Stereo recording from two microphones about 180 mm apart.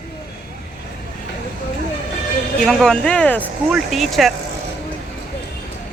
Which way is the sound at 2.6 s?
5° left (ahead or behind).